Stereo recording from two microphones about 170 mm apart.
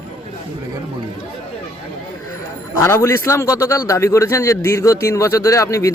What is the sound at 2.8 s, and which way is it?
A man's voice, 15° left (ahead or behind).